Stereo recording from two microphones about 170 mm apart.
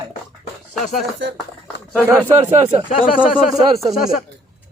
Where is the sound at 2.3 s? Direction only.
40° right (ahead or behind).